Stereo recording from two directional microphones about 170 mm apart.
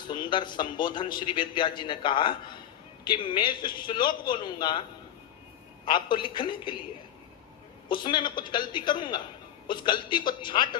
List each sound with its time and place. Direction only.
0.1 s a man's voice: 25° left (ahead or behind)
5.8 s a man's voice: 30° left (ahead or behind)
7.9 s a man's voice: 30° left (ahead or behind)